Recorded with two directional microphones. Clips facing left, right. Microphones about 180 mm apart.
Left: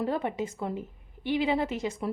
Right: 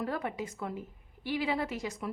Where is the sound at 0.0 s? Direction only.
25° left (ahead or behind).